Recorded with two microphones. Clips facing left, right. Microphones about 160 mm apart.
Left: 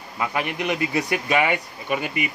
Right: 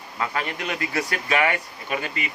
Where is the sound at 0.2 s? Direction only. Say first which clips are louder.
Left 2 dB; 15° left (ahead or behind).